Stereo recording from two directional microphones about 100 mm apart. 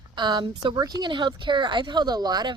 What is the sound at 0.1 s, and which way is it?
Speech, 45° right (ahead or behind).